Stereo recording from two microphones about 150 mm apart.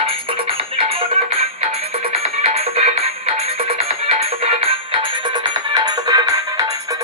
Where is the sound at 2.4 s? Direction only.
45° right (ahead or behind).